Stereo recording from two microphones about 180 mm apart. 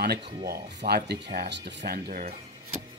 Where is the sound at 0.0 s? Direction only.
65° right (ahead or behind).